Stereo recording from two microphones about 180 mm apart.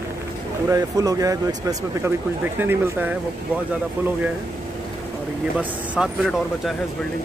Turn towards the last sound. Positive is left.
turn(degrees=-5)  # may be behind; listen again after turning